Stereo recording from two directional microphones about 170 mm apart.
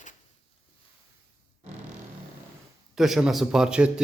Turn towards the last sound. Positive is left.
turn(degrees=-5)  # may be behind; listen again after turning